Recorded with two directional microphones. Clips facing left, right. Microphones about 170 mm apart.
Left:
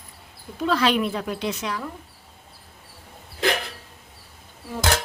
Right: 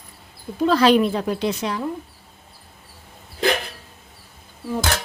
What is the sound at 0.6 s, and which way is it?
A woman's voice, 35° right (ahead or behind).